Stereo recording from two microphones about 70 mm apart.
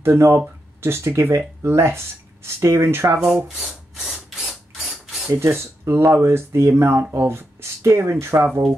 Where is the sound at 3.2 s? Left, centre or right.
Centre.